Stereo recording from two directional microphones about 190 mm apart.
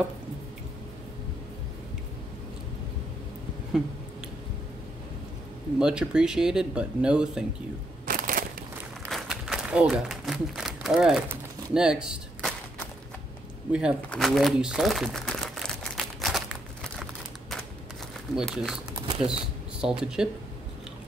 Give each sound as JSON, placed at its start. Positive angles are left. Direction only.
{"t": 5.8, "sound": "speech", "side_deg": -5}
{"t": 8.1, "sound": "a sound", "side_deg": -45}
{"t": 9.0, "sound": "applause", "side_deg": 0}
{"t": 12.1, "sound": "a sound", "side_deg": 0}
{"t": 13.7, "sound": "speech", "side_deg": -5}
{"t": 14.0, "sound": "crumpling", "side_deg": 0}
{"t": 18.3, "sound": "speech", "side_deg": -5}
{"t": 19.8, "sound": "speech", "side_deg": -5}